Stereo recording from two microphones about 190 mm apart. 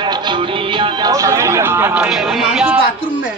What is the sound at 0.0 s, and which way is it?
Music, 25° right (ahead or behind).